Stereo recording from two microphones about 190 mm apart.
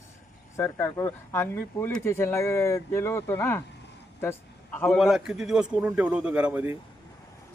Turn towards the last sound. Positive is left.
turn(degrees=-10)  # may be behind; listen again after turning